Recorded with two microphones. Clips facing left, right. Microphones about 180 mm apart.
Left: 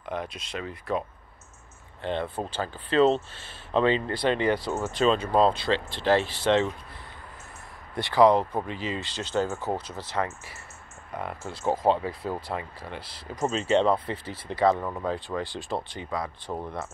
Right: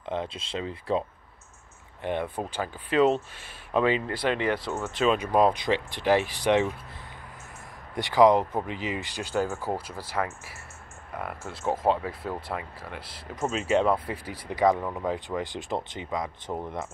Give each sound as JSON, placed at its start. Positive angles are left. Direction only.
{"t": 0.0, "sound": "speech", "side_deg": -25}
{"t": 2.0, "sound": "speech", "side_deg": -15}
{"t": 7.9, "sound": "speech", "side_deg": -15}
{"t": 14.8, "sound": "speech", "side_deg": 0}
{"t": 15.0, "sound": "speech", "side_deg": -15}